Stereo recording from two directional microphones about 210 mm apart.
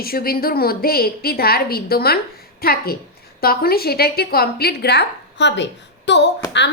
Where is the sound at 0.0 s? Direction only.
45° left (ahead or behind).